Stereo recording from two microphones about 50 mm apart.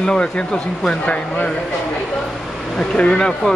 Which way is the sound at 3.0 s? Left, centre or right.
Left.